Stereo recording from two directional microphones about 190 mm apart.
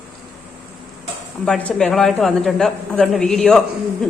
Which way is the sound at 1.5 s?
5° left (ahead or behind).